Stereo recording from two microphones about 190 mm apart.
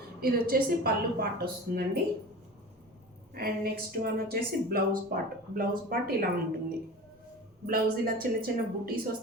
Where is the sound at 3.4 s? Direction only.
50° right (ahead or behind).